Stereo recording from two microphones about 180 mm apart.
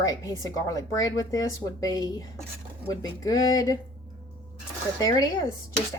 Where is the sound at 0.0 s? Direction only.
20° left (ahead or behind).